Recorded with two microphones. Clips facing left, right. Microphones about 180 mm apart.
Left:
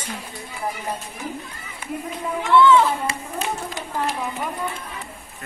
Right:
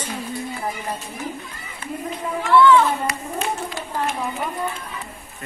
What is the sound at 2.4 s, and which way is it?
Speech, 20° left (ahead or behind).